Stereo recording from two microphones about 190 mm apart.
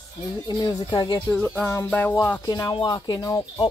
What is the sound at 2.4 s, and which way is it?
Speech, 20° left (ahead or behind).